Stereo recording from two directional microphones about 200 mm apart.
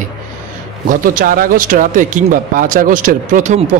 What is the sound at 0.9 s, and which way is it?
Speech, 45° right (ahead or behind).